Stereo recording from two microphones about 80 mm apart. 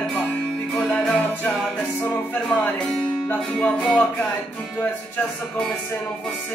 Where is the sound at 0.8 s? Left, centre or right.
Centre.